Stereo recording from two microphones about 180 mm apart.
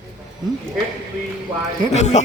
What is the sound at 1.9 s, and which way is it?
Speech, 40° left (ahead or behind).